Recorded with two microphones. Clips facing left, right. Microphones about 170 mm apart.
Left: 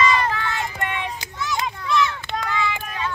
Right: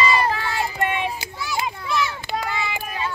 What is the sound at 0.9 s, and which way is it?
Children playing, 10° right (ahead or behind).